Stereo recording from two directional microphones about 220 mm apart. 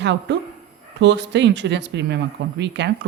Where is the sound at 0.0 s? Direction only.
55° right (ahead or behind).